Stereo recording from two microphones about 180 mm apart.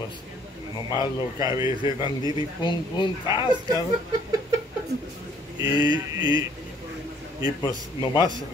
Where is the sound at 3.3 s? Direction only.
20° right (ahead or behind).